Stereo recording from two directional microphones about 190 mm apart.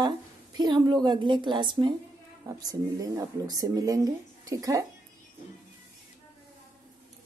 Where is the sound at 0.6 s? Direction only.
25° right (ahead or behind).